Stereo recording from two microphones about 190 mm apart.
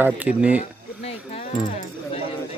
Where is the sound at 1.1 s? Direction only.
30° left (ahead or behind).